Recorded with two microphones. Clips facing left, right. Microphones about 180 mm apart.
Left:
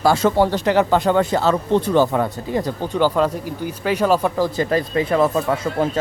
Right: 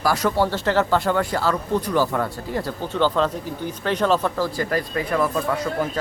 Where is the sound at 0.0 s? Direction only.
25° left (ahead or behind).